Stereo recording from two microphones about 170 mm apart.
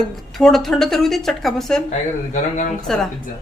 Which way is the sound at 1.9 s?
45° left (ahead or behind).